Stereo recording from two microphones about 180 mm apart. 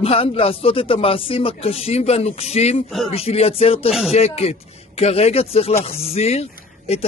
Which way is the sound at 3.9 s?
Centre (ahead or behind).